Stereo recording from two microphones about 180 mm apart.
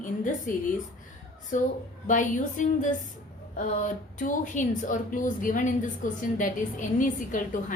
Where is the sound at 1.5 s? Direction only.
45° left (ahead or behind).